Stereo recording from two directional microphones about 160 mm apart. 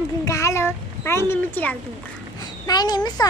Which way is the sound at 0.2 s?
20° left (ahead or behind).